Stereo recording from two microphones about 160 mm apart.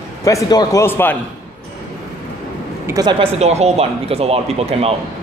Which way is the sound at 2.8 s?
20° right (ahead or behind).